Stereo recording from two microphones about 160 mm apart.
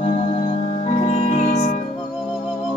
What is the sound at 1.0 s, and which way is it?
Music, 35° left (ahead or behind).